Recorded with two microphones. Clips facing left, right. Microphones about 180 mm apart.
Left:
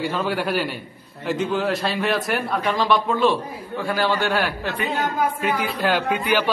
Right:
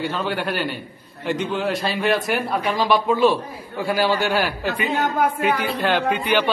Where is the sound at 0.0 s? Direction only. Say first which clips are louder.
Left 1 dB; 5° left (ahead or behind).